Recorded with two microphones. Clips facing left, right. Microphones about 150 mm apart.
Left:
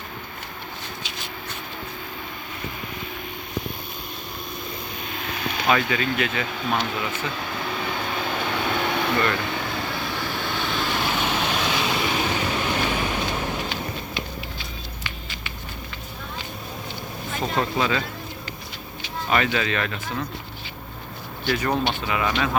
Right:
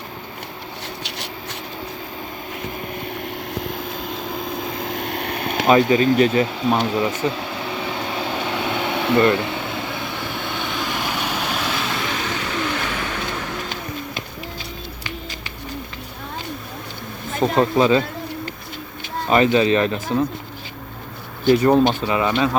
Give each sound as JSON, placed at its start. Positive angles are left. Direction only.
{"t": 3.2, "sound": "vehicle", "side_deg": -90}
{"t": 5.6, "sound": "speech", "side_deg": -30}
{"t": 8.0, "sound": "vehicle", "side_deg": -25}
{"t": 12.1, "sound": "vehicle", "side_deg": 15}
{"t": 17.4, "sound": "speech", "side_deg": -30}
{"t": 19.3, "sound": "speech", "side_deg": -30}
{"t": 21.4, "sound": "speech", "side_deg": -25}